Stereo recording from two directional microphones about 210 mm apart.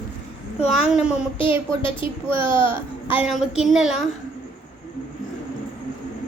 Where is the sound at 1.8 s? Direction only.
25° left (ahead or behind).